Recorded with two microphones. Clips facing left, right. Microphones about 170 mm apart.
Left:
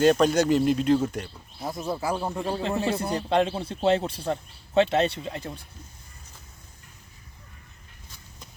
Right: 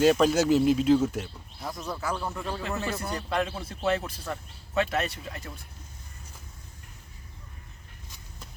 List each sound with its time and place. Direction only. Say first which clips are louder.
0.0 s speech: left 1 dB; 5° right (ahead or behind)
1.6 s speech: left 4 dB; 25° left (ahead or behind)